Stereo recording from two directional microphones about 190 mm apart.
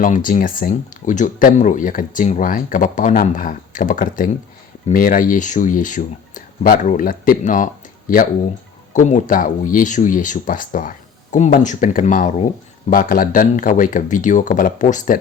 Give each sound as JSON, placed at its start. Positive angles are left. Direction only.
{"t": 0.0, "sound": "speech", "side_deg": 45}